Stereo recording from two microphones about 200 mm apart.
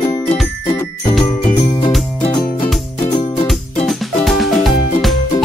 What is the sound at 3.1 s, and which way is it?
Music, 25° left (ahead or behind).